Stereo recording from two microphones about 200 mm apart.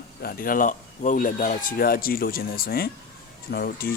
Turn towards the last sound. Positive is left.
turn(degrees=50)  # may be behind; listen again after turning